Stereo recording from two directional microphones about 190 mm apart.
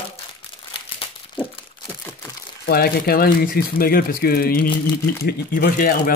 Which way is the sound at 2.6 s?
50° left (ahead or behind).